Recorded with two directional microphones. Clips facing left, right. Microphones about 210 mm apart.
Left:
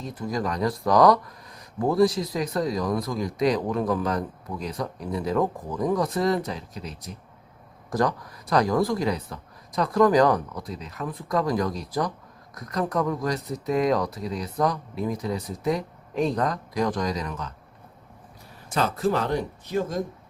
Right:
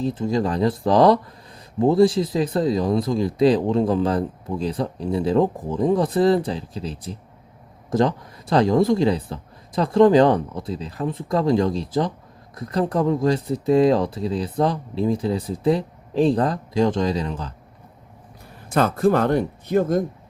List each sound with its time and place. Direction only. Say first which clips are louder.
0.0 s speech: right 7 dB; 25° right (ahead or behind)
18.7 s speech: right 6 dB; 55° right (ahead or behind)